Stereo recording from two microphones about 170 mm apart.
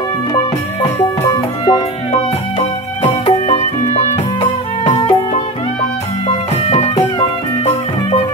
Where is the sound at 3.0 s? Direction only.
35° left (ahead or behind).